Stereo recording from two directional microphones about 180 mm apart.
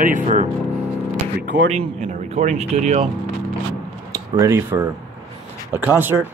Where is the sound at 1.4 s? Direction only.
70° right (ahead or behind).